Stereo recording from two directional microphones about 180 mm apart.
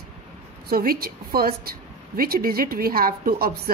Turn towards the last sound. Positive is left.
turn(degrees=-55)  # may be behind; listen again after turning